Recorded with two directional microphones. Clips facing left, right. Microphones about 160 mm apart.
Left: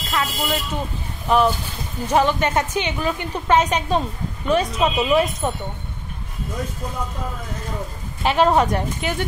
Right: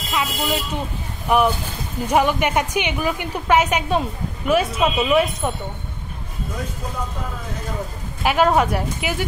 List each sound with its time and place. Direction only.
0.1 s a woman's voice: 15° right (ahead or behind)
8.2 s speech: 5° right (ahead or behind)